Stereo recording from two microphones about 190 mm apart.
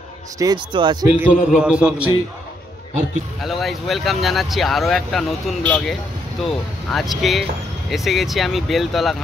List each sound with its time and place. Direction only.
0.4 s speech: 20° right (ahead or behind)
1.2 s speech: 5° right (ahead or behind)
3.4 s speech: centre (ahead or behind)